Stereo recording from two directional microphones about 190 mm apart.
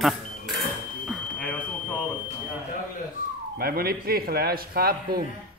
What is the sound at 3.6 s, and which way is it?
A man's voice, 50° right (ahead or behind).